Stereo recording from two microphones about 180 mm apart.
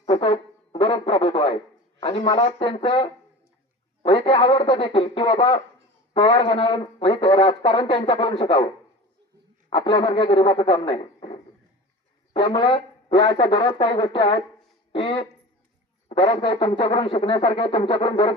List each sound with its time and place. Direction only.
0.0 s a man's voice: 35° left (ahead or behind)